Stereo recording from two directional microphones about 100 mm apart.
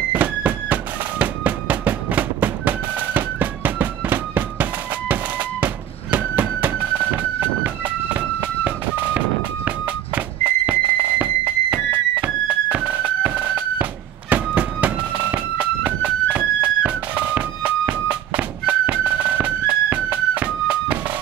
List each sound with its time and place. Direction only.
0.1 s music: 15° right (ahead or behind)
9.7 s a sound: 15° right (ahead or behind)
14.3 s music: 15° right (ahead or behind)